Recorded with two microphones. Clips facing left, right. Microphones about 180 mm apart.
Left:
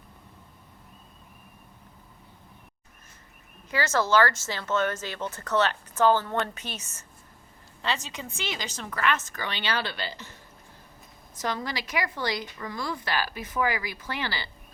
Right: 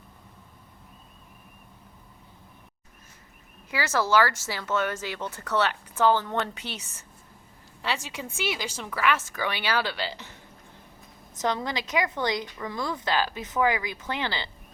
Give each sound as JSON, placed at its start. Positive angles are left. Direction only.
{"t": 3.7, "sound": "speech", "side_deg": -10}
{"t": 11.3, "sound": "speech", "side_deg": -20}